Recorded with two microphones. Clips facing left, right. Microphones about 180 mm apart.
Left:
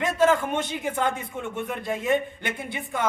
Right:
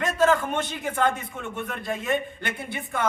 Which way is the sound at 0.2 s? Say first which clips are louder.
Even; 15° left (ahead or behind).